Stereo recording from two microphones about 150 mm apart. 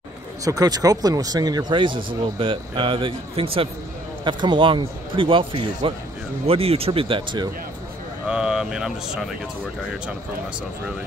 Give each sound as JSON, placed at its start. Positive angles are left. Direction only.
{"t": 0.5, "sound": "speech", "side_deg": -25}
{"t": 8.3, "sound": "speech", "side_deg": -5}